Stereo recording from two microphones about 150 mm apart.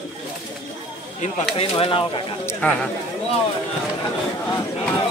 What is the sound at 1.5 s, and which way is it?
Speech, 40° left (ahead or behind).